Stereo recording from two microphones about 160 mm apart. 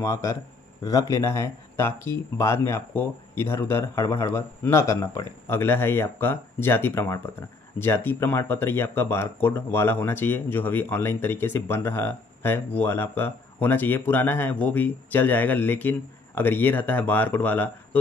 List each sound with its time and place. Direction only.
0.0 s speech: 20° left (ahead or behind)